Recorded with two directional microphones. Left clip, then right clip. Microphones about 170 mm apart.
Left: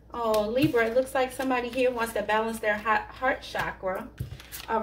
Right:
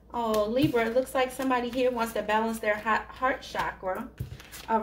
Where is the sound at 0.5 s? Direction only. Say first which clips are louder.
Left 1 dB; 35° right (ahead or behind).